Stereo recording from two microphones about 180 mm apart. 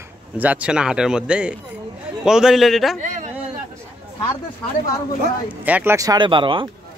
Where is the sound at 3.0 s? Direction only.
45° right (ahead or behind).